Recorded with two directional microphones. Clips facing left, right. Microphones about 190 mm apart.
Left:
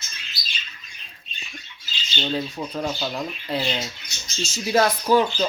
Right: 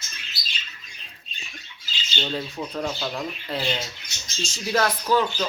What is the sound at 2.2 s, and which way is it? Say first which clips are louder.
Speech: left 3 dB; 5° left (ahead or behind).